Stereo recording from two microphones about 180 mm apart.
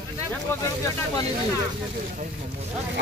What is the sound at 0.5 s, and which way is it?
Speech, 15° left (ahead or behind).